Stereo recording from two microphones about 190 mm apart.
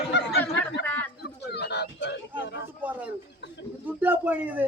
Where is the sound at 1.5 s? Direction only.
60° left (ahead or behind).